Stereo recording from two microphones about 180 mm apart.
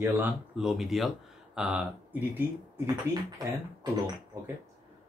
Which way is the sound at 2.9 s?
20° right (ahead or behind).